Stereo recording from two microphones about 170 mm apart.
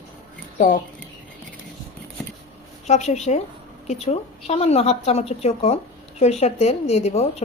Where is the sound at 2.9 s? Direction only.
40° left (ahead or behind).